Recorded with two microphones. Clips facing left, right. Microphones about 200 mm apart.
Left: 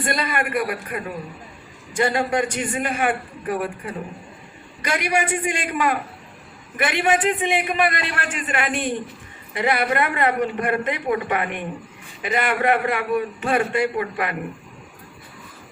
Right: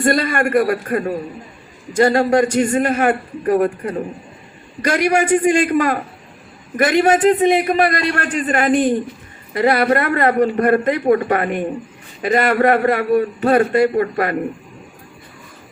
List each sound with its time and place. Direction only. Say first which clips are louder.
0.0 s a man's voice: right 8 dB; 45° right (ahead or behind)